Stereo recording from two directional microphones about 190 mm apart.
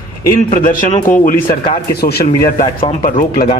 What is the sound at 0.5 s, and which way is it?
Speech, 45° left (ahead or behind).